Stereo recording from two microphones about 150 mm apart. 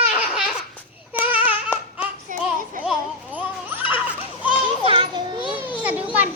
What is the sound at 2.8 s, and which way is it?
Children playing, 10° right (ahead or behind).